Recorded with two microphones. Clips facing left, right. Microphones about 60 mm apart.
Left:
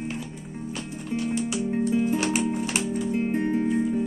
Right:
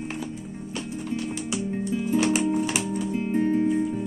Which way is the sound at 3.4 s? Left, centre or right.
Centre.